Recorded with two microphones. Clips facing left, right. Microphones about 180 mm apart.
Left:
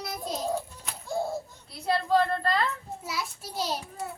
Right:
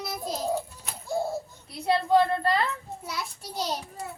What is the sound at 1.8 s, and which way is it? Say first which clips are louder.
Speech: right 3 dB; 20° right (ahead or behind).